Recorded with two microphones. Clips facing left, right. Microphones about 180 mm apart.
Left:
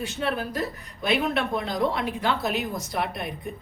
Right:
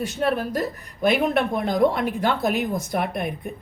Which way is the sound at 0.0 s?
45° right (ahead or behind).